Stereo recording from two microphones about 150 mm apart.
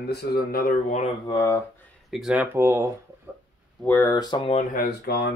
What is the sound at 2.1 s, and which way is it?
Speech, 5° right (ahead or behind).